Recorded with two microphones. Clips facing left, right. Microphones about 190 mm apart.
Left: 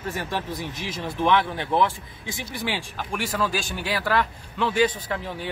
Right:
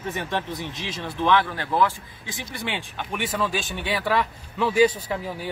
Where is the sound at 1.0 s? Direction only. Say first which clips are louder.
Even; 15° left (ahead or behind).